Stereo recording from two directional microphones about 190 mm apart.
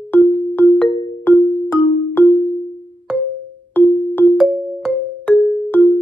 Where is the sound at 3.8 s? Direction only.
10° left (ahead or behind).